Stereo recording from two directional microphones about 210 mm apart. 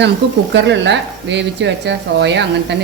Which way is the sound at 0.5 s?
60° right (ahead or behind).